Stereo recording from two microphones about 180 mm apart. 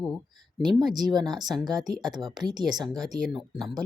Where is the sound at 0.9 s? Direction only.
25° right (ahead or behind).